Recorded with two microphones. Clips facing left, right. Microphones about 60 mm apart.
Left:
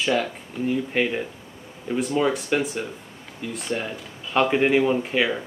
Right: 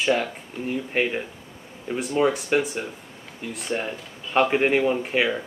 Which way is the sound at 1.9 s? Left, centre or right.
Centre.